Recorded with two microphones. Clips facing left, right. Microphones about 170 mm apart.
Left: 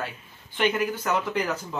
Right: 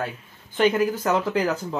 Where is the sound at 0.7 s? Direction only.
30° right (ahead or behind).